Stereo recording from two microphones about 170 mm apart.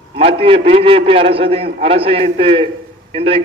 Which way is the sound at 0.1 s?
35° right (ahead or behind).